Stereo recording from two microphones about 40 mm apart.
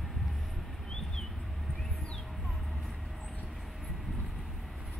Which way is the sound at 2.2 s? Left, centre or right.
Centre.